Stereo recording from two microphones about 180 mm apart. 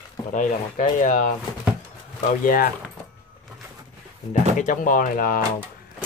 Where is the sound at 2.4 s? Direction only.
55° left (ahead or behind).